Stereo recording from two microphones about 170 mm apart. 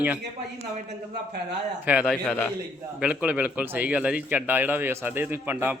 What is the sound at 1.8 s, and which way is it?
Speech, 10° right (ahead or behind).